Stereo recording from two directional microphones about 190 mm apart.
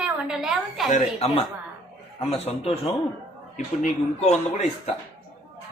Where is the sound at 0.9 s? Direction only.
35° left (ahead or behind).